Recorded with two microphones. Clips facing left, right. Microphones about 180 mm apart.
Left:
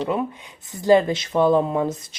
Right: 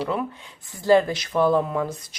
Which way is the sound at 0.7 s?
20° left (ahead or behind).